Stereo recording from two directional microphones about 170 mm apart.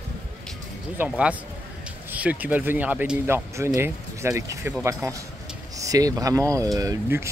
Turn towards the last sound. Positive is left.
turn(degrees=-20)  # may be behind; listen again after turning